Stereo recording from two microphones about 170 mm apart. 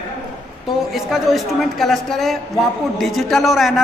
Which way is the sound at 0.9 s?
Centre (ahead or behind).